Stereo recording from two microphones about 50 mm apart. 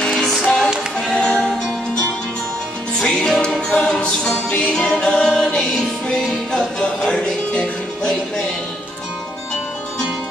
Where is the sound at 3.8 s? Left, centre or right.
Left.